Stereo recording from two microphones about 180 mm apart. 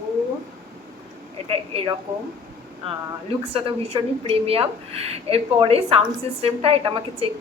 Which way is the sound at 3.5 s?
30° right (ahead or behind).